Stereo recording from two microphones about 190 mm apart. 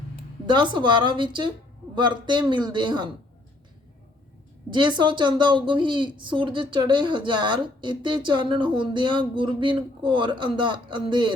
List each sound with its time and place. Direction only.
0.4 s a woman's voice: 25° right (ahead or behind)
4.7 s a woman's voice: 25° right (ahead or behind)